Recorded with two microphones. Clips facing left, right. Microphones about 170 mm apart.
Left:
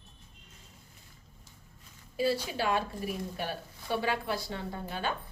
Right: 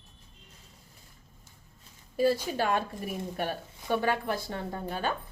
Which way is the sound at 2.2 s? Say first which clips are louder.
Right 4 dB; 45° right (ahead or behind).